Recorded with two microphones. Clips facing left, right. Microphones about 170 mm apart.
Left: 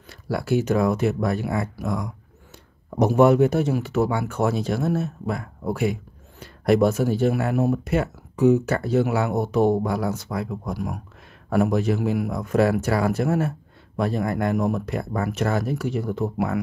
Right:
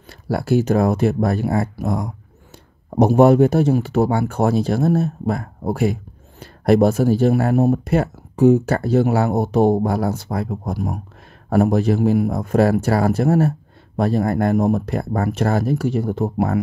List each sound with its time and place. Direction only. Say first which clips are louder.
0.0 s speech: right 4 dB; 35° right (ahead or behind)